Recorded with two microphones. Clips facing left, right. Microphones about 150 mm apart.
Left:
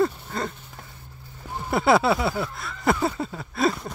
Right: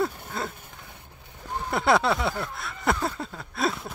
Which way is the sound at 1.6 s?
5° left (ahead or behind).